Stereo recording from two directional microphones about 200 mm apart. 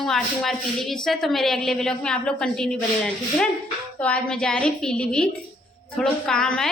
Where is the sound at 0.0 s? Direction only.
Centre (ahead or behind).